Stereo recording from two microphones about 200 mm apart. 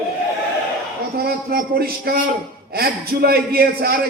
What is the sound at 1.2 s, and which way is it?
A man's voice, 50° right (ahead or behind).